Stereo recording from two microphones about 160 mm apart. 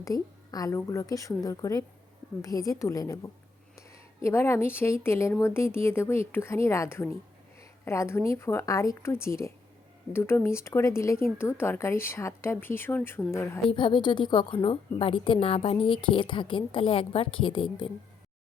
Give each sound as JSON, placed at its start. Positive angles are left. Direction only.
{"t": 0.0, "sound": "a woman's voice", "side_deg": 20}
{"t": 13.7, "sound": "a woman's voice", "side_deg": 30}